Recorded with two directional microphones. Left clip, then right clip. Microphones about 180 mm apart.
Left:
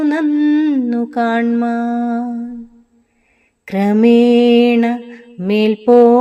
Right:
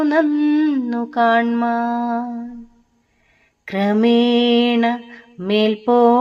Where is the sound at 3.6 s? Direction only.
45° left (ahead or behind).